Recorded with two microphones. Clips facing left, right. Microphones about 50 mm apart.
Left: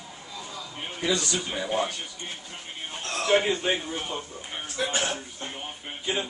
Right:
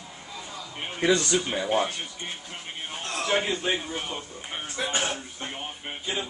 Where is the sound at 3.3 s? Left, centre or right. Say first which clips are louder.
Left 4 dB; centre.